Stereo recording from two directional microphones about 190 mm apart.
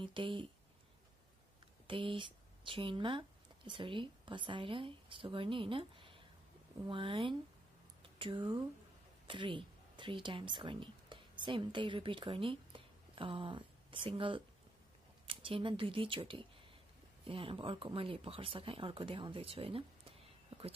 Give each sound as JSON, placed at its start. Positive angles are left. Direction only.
{"t": 0.0, "sound": "speech", "side_deg": -25}
{"t": 1.9, "sound": "speech", "side_deg": -25}